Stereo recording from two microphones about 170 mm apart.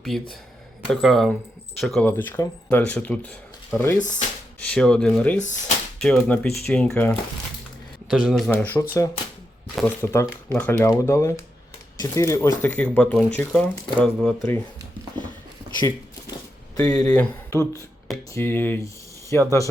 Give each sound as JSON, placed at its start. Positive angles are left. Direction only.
{"t": 0.0, "sound": "speech", "side_deg": 5}
{"t": 5.4, "sound": "speech", "side_deg": 45}
{"t": 6.0, "sound": "speech", "side_deg": 5}
{"t": 8.4, "sound": "speech", "side_deg": 10}
{"t": 16.8, "sound": "speech", "side_deg": 5}